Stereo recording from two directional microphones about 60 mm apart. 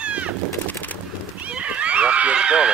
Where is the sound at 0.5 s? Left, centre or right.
Left.